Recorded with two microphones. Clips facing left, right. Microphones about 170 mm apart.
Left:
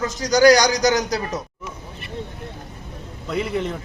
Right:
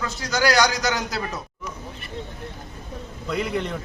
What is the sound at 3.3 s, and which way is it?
Speech, centre (ahead or behind).